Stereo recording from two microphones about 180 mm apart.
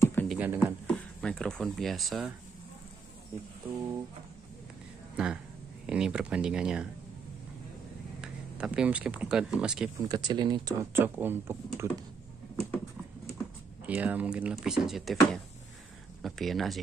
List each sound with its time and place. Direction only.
0.0 s music: 10° left (ahead or behind)
0.3 s speech: 10° right (ahead or behind)
0.8 s speech: 5° left (ahead or behind)
5.1 s speech: 5° right (ahead or behind)
8.2 s speech: 5° right (ahead or behind)
9.9 s speech: 20° right (ahead or behind)
13.8 s speech: 10° right (ahead or behind)